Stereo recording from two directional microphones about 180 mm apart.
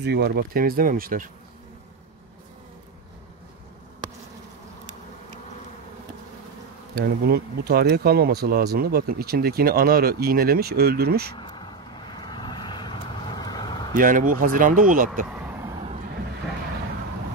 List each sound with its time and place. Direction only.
0.0 s speech: 65° right (ahead or behind)
7.0 s speech: 60° right (ahead or behind)
11.3 s vehicle: 25° left (ahead or behind)
13.9 s speech: 50° right (ahead or behind)
15.2 s vehicle: 5° right (ahead or behind)